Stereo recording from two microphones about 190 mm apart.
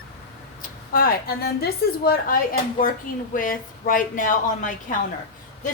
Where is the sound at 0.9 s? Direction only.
50° left (ahead or behind).